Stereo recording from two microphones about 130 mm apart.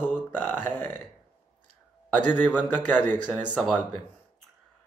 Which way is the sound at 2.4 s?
15° left (ahead or behind).